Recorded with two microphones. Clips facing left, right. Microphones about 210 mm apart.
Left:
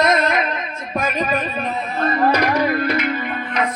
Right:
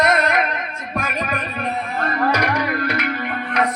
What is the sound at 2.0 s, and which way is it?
Music, 25° left (ahead or behind).